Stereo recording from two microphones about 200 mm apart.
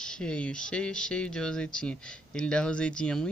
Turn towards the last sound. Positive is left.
turn(degrees=5)  # may be behind; listen again after turning